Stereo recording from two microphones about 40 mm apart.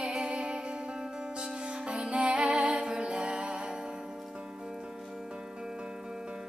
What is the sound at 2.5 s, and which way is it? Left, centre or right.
Music, centre.